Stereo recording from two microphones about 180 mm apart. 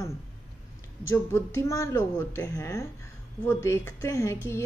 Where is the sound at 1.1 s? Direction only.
15° left (ahead or behind).